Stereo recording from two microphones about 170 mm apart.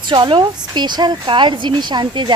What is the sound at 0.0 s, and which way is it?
Speech, 30° right (ahead or behind).